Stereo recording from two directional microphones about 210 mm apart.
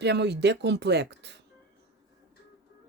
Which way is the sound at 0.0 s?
55° right (ahead or behind).